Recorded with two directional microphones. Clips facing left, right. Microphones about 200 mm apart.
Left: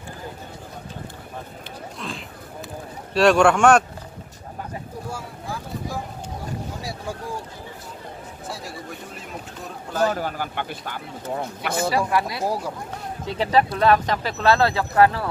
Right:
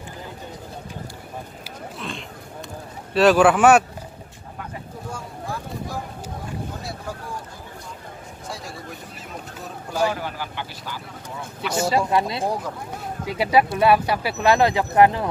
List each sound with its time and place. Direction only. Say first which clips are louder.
2.0 s a sound: right 1 dB; centre (ahead or behind)
3.2 s speech: right 1 dB; centre (ahead or behind)
5.1 s boat: right 4 dB; centre (ahead or behind)
10.1 s speech: left 3 dB; 45° left (ahead or behind)
11.9 s speech: right 3 dB; 25° right (ahead or behind)
13.2 s speech: right 1 dB; 10° right (ahead or behind)